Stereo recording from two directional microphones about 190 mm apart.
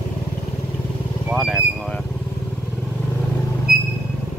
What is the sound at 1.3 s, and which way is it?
Vehicle, centre (ahead or behind).